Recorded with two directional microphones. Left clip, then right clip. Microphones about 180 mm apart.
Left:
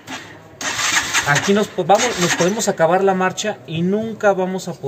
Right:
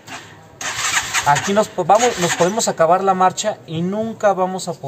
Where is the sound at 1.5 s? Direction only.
25° right (ahead or behind).